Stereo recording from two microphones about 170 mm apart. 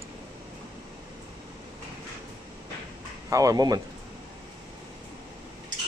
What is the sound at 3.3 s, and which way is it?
Speech, 20° right (ahead or behind).